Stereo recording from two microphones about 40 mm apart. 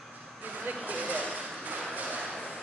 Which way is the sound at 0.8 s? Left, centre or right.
Right.